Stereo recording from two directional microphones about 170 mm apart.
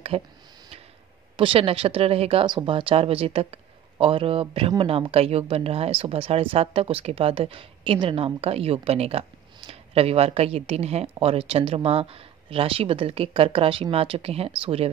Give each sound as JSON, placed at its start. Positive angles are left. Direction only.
{"t": 0.1, "sound": "speech", "side_deg": -35}
{"t": 1.3, "sound": "speech", "side_deg": -30}